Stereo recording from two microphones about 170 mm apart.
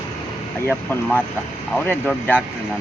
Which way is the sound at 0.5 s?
10° left (ahead or behind).